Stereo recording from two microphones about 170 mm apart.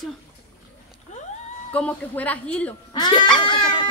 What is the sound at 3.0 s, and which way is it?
Speech, 25° left (ahead or behind).